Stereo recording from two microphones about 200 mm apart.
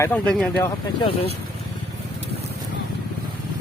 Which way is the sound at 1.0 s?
30° left (ahead or behind).